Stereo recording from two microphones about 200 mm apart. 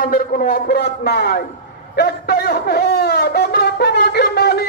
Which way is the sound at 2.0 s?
55° left (ahead or behind).